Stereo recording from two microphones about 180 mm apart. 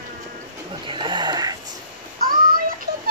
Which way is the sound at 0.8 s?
25° right (ahead or behind).